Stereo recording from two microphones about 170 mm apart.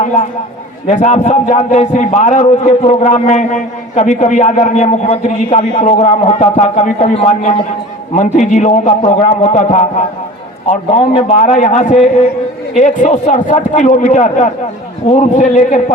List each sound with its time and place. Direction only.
0.9 s a man's voice: 40° left (ahead or behind)